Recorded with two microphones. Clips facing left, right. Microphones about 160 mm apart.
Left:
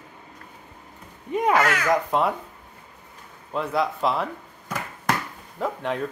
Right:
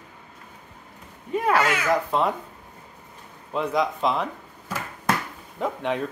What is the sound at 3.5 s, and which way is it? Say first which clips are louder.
Speech: right 1 dB; 5° left (ahead or behind).